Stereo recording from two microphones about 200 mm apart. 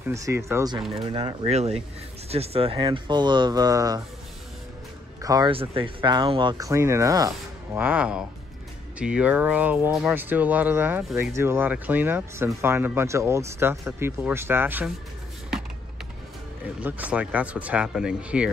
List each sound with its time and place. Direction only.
0.1 s speech: 15° right (ahead or behind)
0.9 s speech: 30° right (ahead or behind)
5.2 s speech: 20° right (ahead or behind)
16.8 s speech: 10° right (ahead or behind)